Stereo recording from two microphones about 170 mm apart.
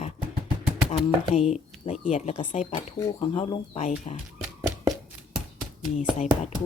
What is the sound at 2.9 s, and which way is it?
Speech, 20° left (ahead or behind).